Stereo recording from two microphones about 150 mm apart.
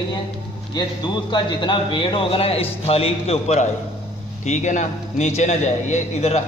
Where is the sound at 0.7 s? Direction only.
30° left (ahead or behind).